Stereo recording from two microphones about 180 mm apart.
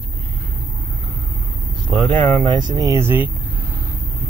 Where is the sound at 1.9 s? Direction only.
25° right (ahead or behind).